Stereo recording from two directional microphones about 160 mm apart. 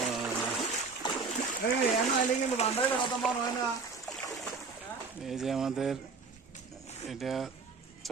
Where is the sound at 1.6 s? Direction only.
75° left (ahead or behind).